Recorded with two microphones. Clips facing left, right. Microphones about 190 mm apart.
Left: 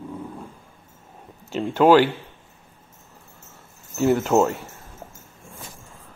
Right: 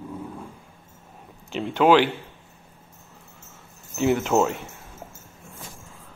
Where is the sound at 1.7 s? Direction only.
5° left (ahead or behind).